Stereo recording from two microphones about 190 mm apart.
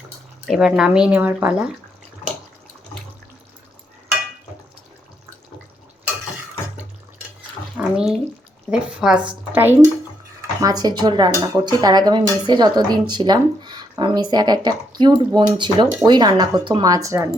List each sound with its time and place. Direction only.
0.4 s speech: centre (ahead or behind)
7.8 s bathtub: 5° right (ahead or behind)
8.7 s speech: 5° right (ahead or behind)